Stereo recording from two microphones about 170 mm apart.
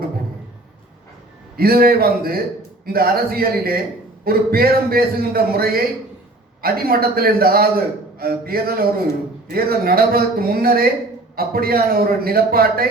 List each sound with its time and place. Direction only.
1.5 s a man's voice: 65° right (ahead or behind)